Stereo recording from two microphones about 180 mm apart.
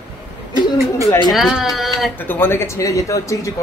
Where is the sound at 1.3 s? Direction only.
Centre (ahead or behind).